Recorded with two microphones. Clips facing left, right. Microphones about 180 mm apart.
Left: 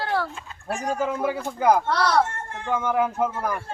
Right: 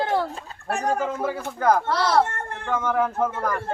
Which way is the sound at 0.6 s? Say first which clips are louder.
Right 2 dB; 60° right (ahead or behind).